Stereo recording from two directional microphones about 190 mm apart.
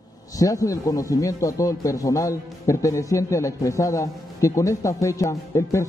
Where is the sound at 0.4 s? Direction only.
20° left (ahead or behind).